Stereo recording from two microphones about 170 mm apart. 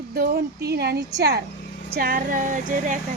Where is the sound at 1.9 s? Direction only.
60° right (ahead or behind).